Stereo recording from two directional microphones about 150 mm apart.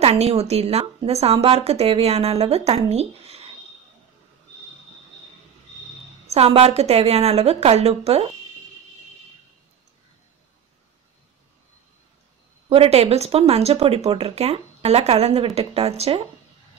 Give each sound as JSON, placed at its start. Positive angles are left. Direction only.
{"t": 0.0, "sound": "speech", "side_deg": -45}
{"t": 6.2, "sound": "speech", "side_deg": -45}
{"t": 12.6, "sound": "speech", "side_deg": -40}